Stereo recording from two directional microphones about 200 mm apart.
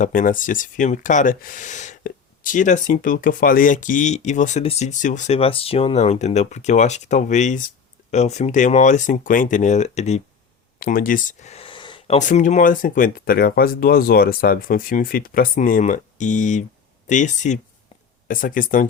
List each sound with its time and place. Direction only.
0.0 s speech: 40° left (ahead or behind)
10.8 s speech: 45° left (ahead or behind)